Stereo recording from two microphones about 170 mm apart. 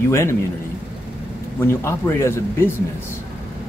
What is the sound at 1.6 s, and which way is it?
Speech, 15° left (ahead or behind).